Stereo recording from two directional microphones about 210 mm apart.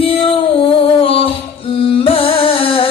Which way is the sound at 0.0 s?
25° left (ahead or behind).